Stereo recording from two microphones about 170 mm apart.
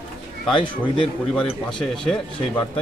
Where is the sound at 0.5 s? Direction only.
30° left (ahead or behind).